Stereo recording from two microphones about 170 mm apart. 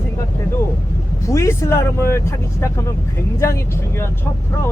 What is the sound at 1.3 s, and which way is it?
Speech, 15° left (ahead or behind).